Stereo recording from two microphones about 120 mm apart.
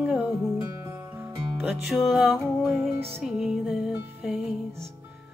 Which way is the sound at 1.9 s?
Centre (ahead or behind).